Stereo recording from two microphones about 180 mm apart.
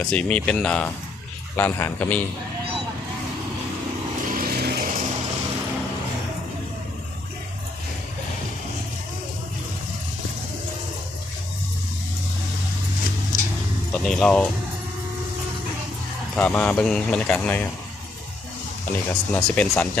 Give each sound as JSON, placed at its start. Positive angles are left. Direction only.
{"t": 0.1, "sound": "speech", "side_deg": 5}
{"t": 4.3, "sound": "a sound", "side_deg": -55}
{"t": 13.9, "sound": "speech", "side_deg": 5}
{"t": 16.3, "sound": "speech", "side_deg": 5}
{"t": 18.9, "sound": "speech", "side_deg": 10}